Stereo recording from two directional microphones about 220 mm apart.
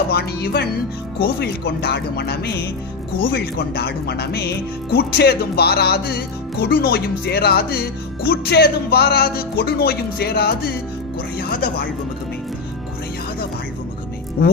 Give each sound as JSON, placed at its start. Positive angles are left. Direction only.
{"t": 0.1, "sound": "speech", "side_deg": 45}